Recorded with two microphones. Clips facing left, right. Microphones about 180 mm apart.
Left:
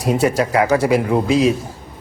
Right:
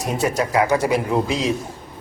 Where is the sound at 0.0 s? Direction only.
30° left (ahead or behind).